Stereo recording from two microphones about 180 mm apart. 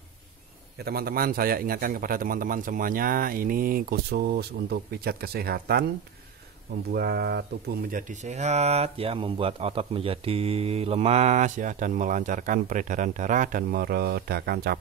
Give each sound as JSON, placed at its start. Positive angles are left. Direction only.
{"t": 0.7, "sound": "a man's voice", "side_deg": -60}
{"t": 6.9, "sound": "a man's voice", "side_deg": -60}
{"t": 7.9, "sound": "speech", "side_deg": -40}